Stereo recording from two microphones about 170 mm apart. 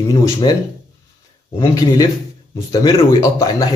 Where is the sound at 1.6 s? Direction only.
20° left (ahead or behind).